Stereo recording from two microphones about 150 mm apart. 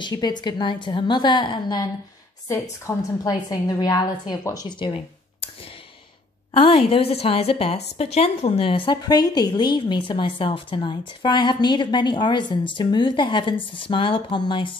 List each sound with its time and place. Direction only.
0.0 s a woman's voice: 25° left (ahead or behind)
6.5 s a woman's voice: 35° left (ahead or behind)
8.9 s a woman's voice: 25° left (ahead or behind)